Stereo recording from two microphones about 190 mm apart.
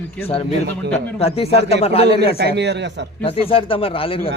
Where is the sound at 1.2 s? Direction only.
30° left (ahead or behind).